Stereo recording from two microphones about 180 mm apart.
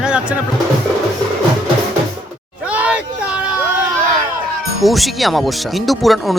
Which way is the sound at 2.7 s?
5° right (ahead or behind).